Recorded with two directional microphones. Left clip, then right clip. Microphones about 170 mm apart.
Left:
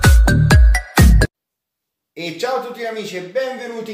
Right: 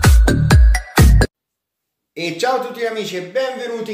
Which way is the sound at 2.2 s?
25° right (ahead or behind).